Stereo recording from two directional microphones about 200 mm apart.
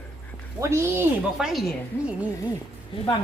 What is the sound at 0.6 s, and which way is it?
Speech, 15° right (ahead or behind).